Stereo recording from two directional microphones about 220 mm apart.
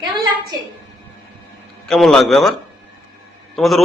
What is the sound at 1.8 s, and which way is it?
Speech, centre (ahead or behind).